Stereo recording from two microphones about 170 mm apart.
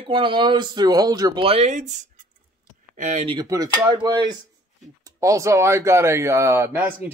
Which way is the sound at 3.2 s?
25° right (ahead or behind).